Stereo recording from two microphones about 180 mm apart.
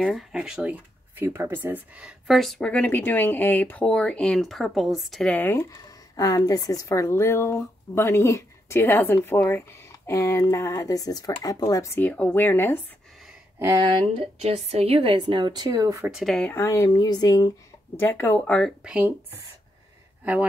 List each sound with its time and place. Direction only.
0.0 s speech: centre (ahead or behind)
13.6 s speech: 15° right (ahead or behind)
13.8 s a woman's voice: 30° right (ahead or behind)
16.1 s speech: centre (ahead or behind)
18.9 s speech: 10° right (ahead or behind)